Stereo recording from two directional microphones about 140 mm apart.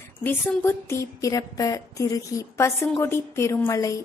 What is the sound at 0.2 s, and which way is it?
A woman's voice, 15° left (ahead or behind).